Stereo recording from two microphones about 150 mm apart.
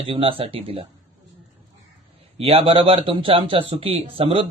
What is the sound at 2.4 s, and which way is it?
Speech, 40° right (ahead or behind).